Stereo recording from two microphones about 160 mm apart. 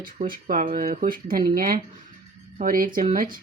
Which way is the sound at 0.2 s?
55° right (ahead or behind).